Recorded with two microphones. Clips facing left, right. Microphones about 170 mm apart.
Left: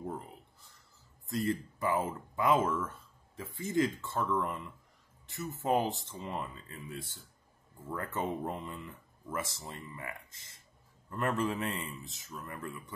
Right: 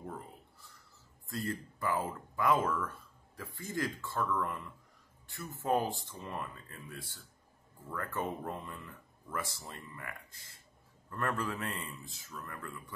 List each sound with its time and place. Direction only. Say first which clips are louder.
1.2 s speech: left 5 dB; 20° left (ahead or behind)